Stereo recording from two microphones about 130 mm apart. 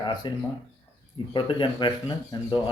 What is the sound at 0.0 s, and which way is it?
Speech, 35° left (ahead or behind).